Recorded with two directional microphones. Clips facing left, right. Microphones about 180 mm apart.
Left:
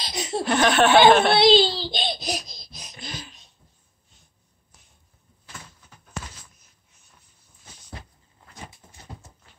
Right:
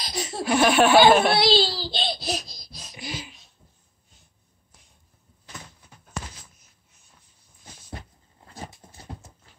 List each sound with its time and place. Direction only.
0.0 s speech: 20° left (ahead or behind)
0.4 s speech: 10° right (ahead or behind)
1.3 s a sound: 20° left (ahead or behind)
2.9 s laughter: 15° right (ahead or behind)
8.5 s dog: 35° right (ahead or behind)